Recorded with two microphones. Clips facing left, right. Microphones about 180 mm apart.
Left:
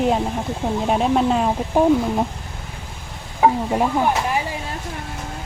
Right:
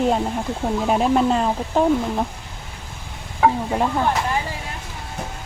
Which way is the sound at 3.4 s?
10° left (ahead or behind).